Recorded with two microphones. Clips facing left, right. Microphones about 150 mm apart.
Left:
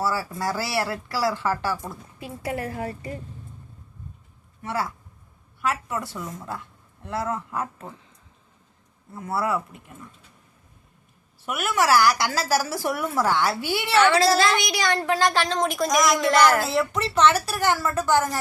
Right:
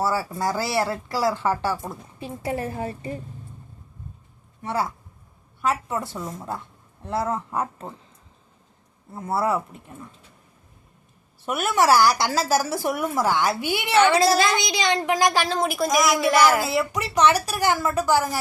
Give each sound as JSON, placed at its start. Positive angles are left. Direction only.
{"t": 0.0, "sound": "speech", "side_deg": -20}
{"t": 4.6, "sound": "speech", "side_deg": -20}
{"t": 9.1, "sound": "speech", "side_deg": -30}
{"t": 11.4, "sound": "a woman's voice", "side_deg": -30}